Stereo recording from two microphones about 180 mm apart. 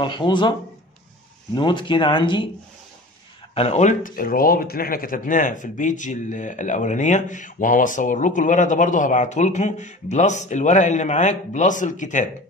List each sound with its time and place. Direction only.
0.0 s speech: 25° left (ahead or behind)
3.5 s speech: 35° left (ahead or behind)